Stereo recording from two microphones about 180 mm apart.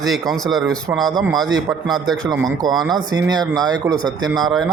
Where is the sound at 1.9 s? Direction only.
Centre (ahead or behind).